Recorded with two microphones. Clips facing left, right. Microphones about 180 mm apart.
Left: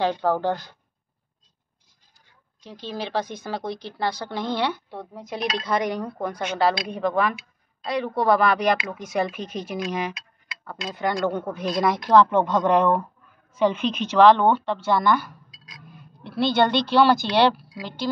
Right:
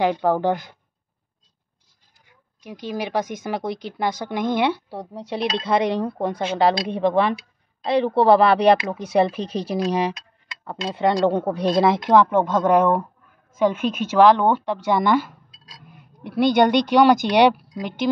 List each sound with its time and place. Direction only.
0.0 s a woman's voice: 15° right (ahead or behind)
2.2 s a woman's voice: 15° right (ahead or behind)
4.8 s speech: 35° right (ahead or behind)
10.6 s a woman's voice: 25° right (ahead or behind)
16.2 s a woman's voice: 15° right (ahead or behind)